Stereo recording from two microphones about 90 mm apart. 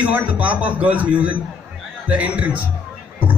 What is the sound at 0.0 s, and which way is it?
Speech, 15° right (ahead or behind).